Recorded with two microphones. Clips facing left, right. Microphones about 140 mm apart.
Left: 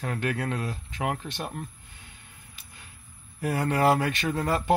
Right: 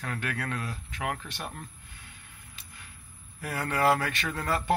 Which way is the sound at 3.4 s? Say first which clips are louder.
Left 4 dB; 25° left (ahead or behind).